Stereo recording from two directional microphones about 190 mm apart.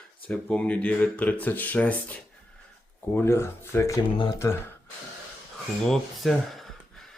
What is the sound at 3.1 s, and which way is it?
Speech, 15° left (ahead or behind).